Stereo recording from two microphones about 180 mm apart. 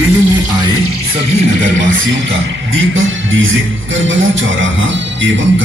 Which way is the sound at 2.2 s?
90° right.